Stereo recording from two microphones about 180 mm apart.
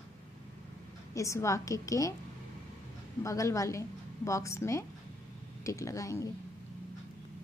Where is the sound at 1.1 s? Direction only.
15° left (ahead or behind).